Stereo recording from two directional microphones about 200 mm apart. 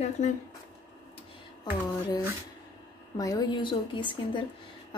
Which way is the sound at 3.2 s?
20° left (ahead or behind).